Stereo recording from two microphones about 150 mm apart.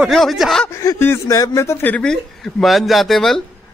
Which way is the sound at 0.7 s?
20° left (ahead or behind).